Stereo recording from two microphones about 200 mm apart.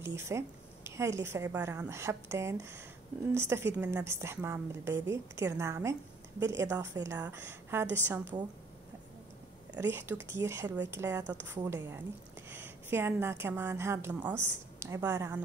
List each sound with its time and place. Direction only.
0.0 s a woman's voice: 15° right (ahead or behind)
9.8 s a woman's voice: 10° right (ahead or behind)